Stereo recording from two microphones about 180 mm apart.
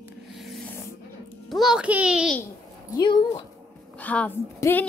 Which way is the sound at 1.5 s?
Centre (ahead or behind).